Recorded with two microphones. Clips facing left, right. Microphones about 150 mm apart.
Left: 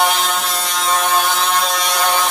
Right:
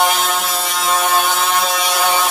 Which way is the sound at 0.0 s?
Centre (ahead or behind).